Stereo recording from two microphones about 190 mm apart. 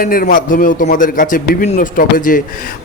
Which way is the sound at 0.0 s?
50° left (ahead or behind).